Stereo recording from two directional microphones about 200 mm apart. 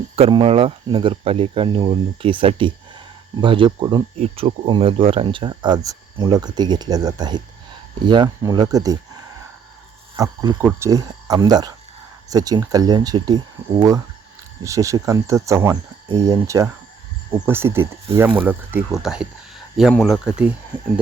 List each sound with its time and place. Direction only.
0.2 s speech: 25° right (ahead or behind)
10.2 s speech: 10° right (ahead or behind)